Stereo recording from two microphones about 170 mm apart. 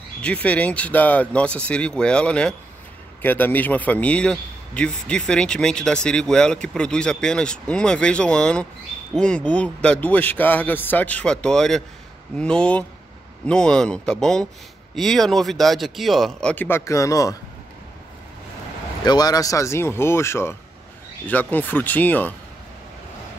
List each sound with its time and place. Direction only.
0.2 s a man's voice: 10° left (ahead or behind)
19.0 s a man's voice: 25° left (ahead or behind)